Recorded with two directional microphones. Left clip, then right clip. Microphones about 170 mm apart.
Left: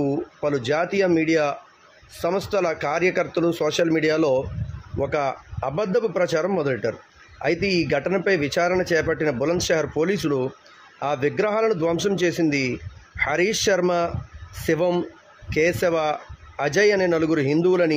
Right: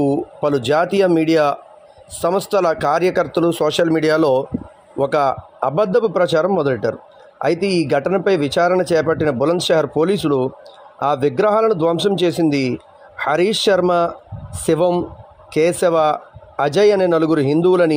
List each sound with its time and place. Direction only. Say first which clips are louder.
0.0 s speech: right 6 dB; 25° right (ahead or behind)